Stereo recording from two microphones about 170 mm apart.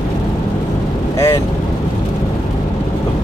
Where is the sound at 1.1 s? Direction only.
15° left (ahead or behind).